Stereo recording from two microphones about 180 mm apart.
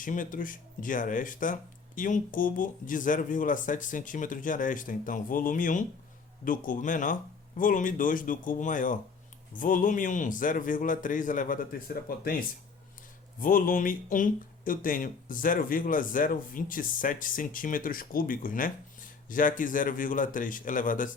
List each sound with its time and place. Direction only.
0.0 s speech: 45° left (ahead or behind)